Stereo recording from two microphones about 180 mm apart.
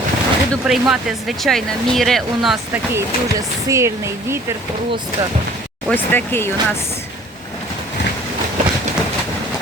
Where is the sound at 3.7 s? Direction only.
15° right (ahead or behind).